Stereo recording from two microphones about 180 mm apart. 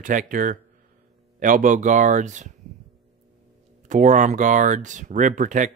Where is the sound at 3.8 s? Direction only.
45° right (ahead or behind).